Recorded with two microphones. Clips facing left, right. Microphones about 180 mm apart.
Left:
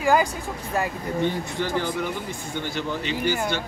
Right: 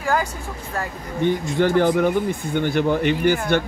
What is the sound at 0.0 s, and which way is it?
Speech, 15° left (ahead or behind).